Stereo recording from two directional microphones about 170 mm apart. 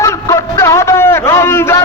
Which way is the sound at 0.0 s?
15° left (ahead or behind).